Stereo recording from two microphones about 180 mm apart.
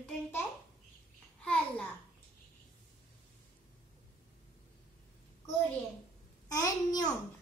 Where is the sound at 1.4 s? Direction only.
5° left (ahead or behind).